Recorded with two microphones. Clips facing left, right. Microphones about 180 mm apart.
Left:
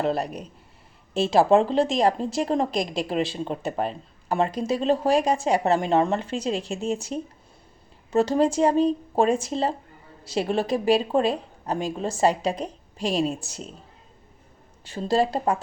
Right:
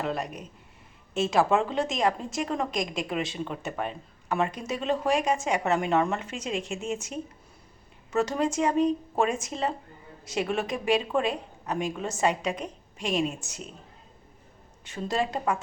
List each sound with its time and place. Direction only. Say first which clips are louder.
0.0 s speech: left 6 dB; 35° left (ahead or behind)
14.8 s speech: left 6 dB; 35° left (ahead or behind)